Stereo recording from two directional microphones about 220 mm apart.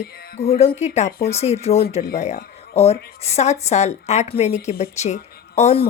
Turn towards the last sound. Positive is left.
turn(degrees=30)  # may be behind; listen again after turning